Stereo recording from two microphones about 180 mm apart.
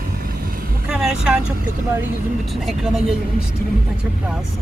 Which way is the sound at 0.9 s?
5° right (ahead or behind).